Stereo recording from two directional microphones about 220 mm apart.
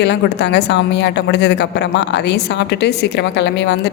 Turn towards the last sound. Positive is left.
turn(degrees=50)  # may be behind; listen again after turning